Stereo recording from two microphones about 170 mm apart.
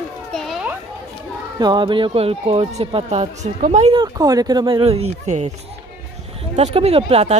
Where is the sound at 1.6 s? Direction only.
25° right (ahead or behind); by 3.9 s 45° right (ahead or behind).